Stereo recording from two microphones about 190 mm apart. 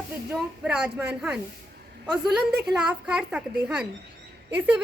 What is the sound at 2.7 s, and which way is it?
A woman's voice, 5° right (ahead or behind).